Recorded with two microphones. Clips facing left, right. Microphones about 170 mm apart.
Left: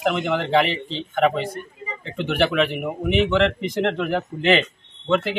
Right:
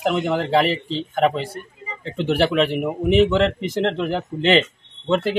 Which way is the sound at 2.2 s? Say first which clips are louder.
Right 2 dB; 35° right (ahead or behind).